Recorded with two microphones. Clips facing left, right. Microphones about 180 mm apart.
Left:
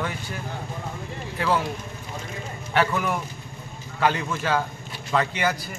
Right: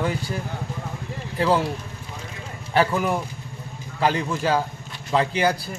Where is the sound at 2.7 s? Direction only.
35° right (ahead or behind).